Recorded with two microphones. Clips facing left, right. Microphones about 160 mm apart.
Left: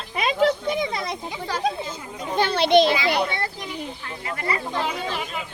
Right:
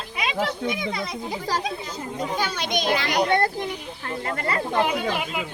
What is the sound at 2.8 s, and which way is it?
Speech, 50° right (ahead or behind).